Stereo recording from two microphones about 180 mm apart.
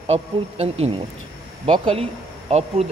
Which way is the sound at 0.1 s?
35° right (ahead or behind).